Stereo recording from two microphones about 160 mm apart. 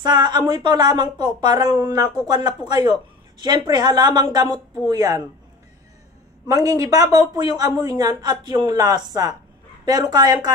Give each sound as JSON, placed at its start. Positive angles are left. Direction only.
{"t": 0.0, "sound": "speech", "side_deg": -25}
{"t": 6.4, "sound": "speech", "side_deg": -20}